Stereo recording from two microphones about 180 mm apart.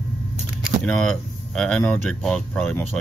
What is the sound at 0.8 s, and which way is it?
Speech, 5° left (ahead or behind).